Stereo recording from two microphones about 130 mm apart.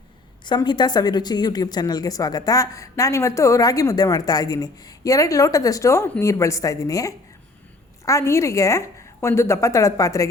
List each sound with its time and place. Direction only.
0.4 s speech: 35° left (ahead or behind)